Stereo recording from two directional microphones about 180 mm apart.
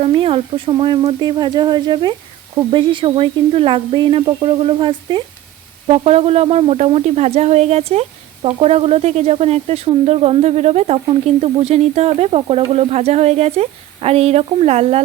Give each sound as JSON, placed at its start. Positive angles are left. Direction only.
{"t": 0.0, "sound": "speech", "side_deg": -30}